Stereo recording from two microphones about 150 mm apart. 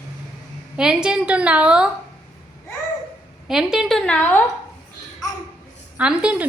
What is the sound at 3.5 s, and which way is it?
Speech, 5° right (ahead or behind).